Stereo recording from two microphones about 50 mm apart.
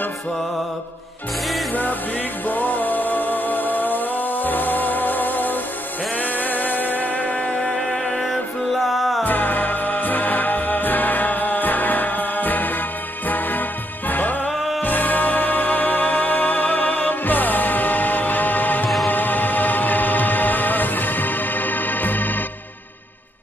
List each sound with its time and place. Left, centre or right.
1.7 s music: left
7.6 s music: centre
9.2 s music: left
14.5 s music: centre
14.8 s music: left